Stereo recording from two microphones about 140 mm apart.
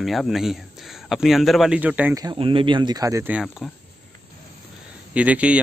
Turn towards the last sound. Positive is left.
turn(degrees=-10)  # may be behind; listen again after turning